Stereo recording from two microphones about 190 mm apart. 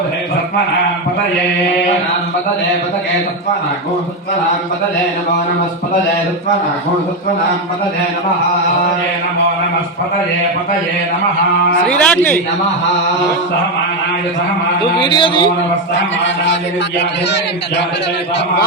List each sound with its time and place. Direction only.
11.9 s a man's voice: 5° left (ahead or behind)
14.9 s a man's voice: 25° left (ahead or behind)